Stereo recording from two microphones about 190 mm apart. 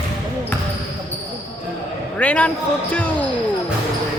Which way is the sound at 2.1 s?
5° left (ahead or behind).